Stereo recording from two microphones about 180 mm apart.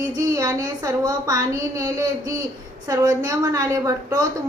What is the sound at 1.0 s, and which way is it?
A woman's voice, 20° right (ahead or behind).